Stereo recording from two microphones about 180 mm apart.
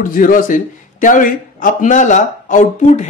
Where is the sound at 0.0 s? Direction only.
50° left (ahead or behind).